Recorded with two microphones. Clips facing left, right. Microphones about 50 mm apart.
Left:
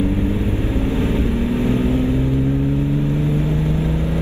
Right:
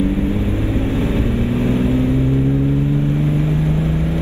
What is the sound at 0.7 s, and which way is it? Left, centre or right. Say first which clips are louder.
Vehicle: even; right.